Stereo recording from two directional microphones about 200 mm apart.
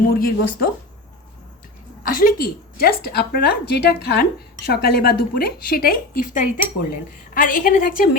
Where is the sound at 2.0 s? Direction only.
45° left (ahead or behind).